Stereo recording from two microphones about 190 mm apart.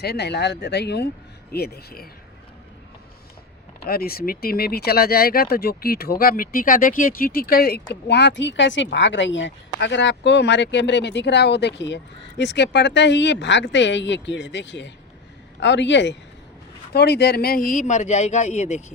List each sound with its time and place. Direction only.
0.0 s speech: 60° left (ahead or behind)
3.8 s speech: 50° left (ahead or behind); by 18.8 s 35° left (ahead or behind)